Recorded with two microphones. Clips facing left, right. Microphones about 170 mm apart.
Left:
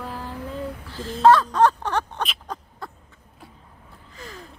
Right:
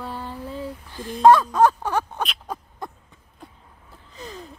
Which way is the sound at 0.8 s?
15° right (ahead or behind).